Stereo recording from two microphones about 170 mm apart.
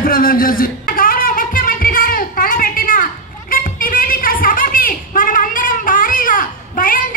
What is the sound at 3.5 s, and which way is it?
Music, 55° left (ahead or behind).